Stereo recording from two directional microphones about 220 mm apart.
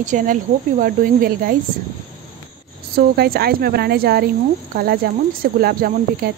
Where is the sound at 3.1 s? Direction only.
45° right (ahead or behind).